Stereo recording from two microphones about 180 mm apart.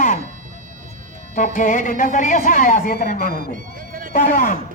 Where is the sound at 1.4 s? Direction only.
45° left (ahead or behind).